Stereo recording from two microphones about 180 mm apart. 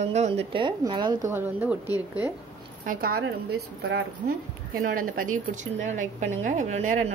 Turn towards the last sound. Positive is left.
turn(degrees=-40)  # may be behind; listen again after turning